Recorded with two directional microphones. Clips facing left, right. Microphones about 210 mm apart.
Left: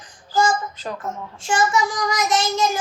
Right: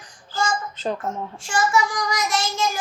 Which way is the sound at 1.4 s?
20° left (ahead or behind).